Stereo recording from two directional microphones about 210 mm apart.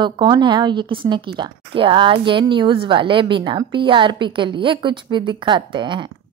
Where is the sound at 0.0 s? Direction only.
20° right (ahead or behind).